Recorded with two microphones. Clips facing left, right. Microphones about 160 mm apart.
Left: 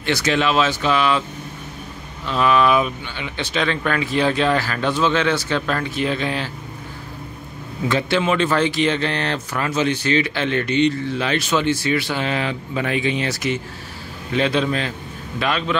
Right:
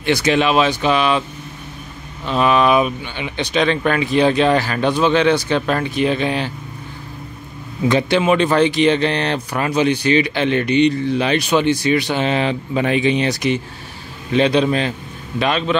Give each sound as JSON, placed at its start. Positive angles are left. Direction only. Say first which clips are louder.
{"t": 0.0, "sound": "speech", "louder": "right 4 dB", "side_deg": -15}
{"t": 2.2, "sound": "speech", "louder": "right 2 dB", "side_deg": -20}
{"t": 7.9, "sound": "speech", "louder": "right 4 dB", "side_deg": -15}